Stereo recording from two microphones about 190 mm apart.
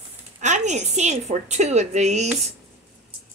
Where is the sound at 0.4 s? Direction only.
40° right (ahead or behind).